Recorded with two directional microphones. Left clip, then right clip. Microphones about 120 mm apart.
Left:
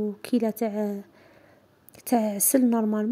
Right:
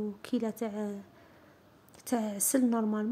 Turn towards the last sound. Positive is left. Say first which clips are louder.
# left 6 dB
turn(degrees=40)  # may be behind; listen again after turning